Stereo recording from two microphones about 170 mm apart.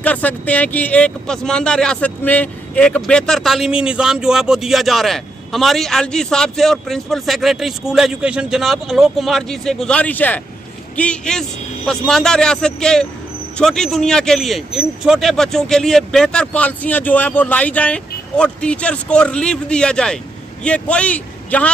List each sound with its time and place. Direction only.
0.0 s a man's voice: 10° left (ahead or behind)